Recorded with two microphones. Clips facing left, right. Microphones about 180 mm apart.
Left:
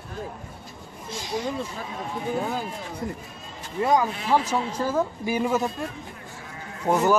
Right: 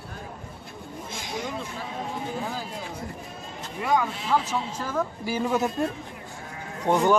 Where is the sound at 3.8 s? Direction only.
35° left (ahead or behind).